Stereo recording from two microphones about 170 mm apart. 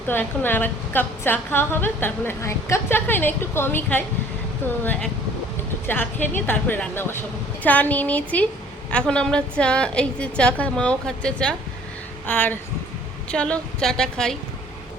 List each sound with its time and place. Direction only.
0.1 s a woman's voice: 10° left (ahead or behind)